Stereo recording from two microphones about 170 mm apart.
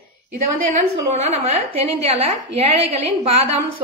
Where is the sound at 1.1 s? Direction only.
35° right (ahead or behind).